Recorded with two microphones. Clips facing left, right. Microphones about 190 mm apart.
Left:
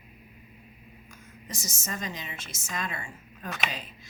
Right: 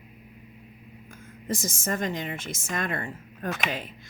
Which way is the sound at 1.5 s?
55° right (ahead or behind).